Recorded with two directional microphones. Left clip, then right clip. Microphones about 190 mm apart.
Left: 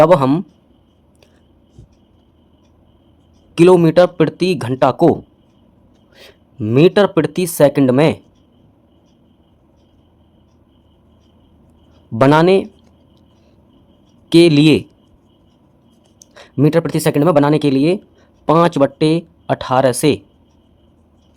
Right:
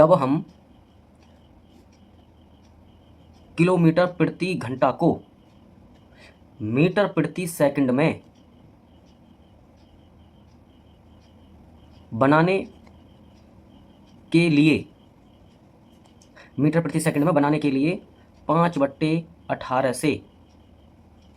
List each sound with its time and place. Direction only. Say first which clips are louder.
0.0 s speech: left 6 dB; 55° left (ahead or behind)
3.5 s speech: left 10 dB; 60° left (ahead or behind)
6.1 s speech: left 9 dB; 55° left (ahead or behind)
12.1 s speech: left 8 dB; 65° left (ahead or behind)
14.3 s speech: left 9 dB; 65° left (ahead or behind)
16.3 s speech: left 9 dB; 60° left (ahead or behind)